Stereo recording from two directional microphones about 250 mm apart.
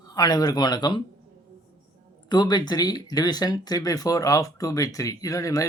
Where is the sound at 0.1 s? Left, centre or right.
Centre.